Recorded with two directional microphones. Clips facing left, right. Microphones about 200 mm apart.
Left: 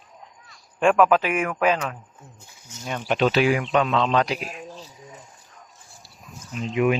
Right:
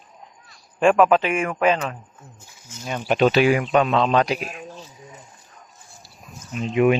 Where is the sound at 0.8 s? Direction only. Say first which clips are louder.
Right 2 dB; centre (ahead or behind).